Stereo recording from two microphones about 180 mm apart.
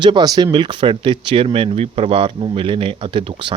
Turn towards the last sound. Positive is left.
turn(degrees=-30)  # may be behind; listen again after turning